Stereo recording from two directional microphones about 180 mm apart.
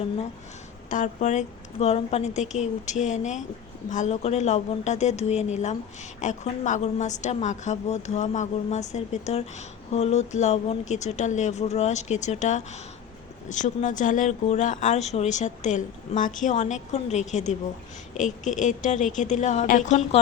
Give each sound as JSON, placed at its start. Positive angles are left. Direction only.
{"t": 0.9, "sound": "a woman's voice", "side_deg": 45}